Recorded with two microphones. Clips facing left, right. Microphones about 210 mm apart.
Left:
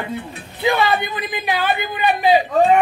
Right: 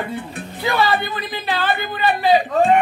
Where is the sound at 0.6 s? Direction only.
15° left (ahead or behind).